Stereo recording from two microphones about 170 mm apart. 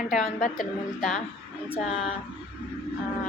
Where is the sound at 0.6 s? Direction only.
Centre (ahead or behind).